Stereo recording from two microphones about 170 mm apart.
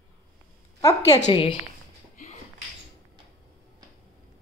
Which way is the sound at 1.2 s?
30° left (ahead or behind).